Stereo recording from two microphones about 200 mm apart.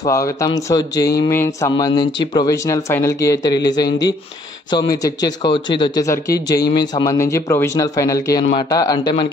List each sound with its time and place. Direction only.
0.0 s speech: 15° left (ahead or behind)